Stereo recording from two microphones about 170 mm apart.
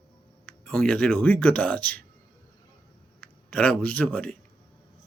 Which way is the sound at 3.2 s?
10° left (ahead or behind).